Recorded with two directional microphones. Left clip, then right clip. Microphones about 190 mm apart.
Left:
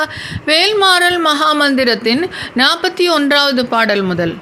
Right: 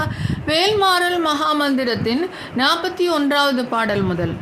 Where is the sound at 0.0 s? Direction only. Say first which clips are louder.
Left 6 dB; 15° left (ahead or behind).